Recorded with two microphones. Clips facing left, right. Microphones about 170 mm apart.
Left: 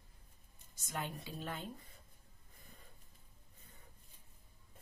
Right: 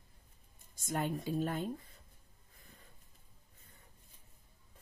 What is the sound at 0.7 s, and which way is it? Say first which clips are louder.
Speech: right 7 dB; 45° right (ahead or behind).